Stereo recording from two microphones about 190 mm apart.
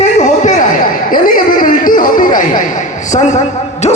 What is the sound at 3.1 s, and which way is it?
Speech, 40° left (ahead or behind).